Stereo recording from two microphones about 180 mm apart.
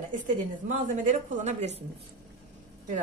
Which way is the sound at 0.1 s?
45° right (ahead or behind).